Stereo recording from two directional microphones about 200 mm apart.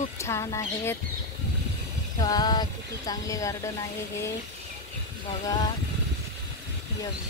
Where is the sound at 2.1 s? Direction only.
20° left (ahead or behind).